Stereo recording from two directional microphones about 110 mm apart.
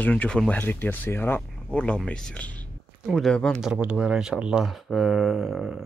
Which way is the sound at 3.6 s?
5° right (ahead or behind).